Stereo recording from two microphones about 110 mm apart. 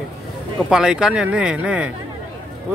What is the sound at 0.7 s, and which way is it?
Speech, 5° right (ahead or behind).